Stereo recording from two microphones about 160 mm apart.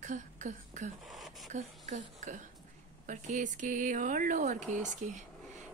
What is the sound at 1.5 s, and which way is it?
A woman's voice, 50° right (ahead or behind).